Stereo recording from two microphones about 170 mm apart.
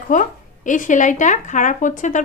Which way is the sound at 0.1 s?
50° left (ahead or behind).